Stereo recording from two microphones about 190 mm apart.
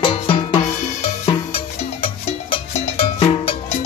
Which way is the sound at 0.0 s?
25° left (ahead or behind).